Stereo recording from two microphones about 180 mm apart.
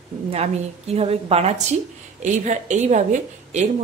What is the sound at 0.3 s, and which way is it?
A woman's voice, 35° right (ahead or behind).